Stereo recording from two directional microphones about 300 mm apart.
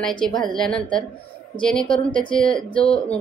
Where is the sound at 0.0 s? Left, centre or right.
Centre.